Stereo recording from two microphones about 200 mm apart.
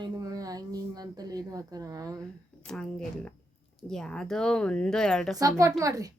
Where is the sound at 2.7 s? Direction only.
5° left (ahead or behind).